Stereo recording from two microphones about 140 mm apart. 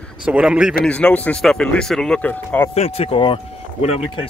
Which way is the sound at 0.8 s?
5° left (ahead or behind).